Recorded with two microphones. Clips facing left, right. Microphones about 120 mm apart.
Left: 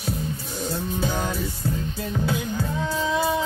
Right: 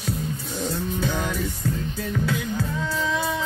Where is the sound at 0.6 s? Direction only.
10° left (ahead or behind).